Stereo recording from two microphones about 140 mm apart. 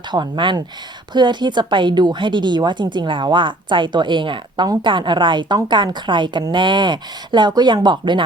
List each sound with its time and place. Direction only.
0.1 s speech: 35° right (ahead or behind)